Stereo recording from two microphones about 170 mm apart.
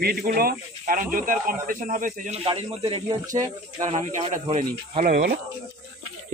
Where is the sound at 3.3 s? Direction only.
20° right (ahead or behind).